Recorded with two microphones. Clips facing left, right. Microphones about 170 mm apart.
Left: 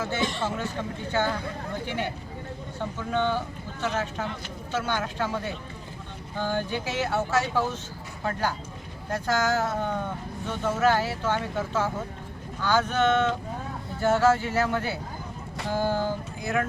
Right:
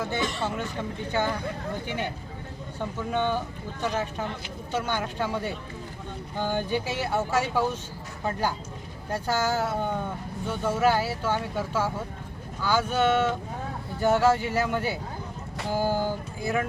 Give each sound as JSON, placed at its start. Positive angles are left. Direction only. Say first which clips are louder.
{"t": 0.0, "sound": "speech", "louder": "even", "side_deg": -15}
{"t": 3.1, "sound": "speech", "louder": "left 1 dB", "side_deg": -15}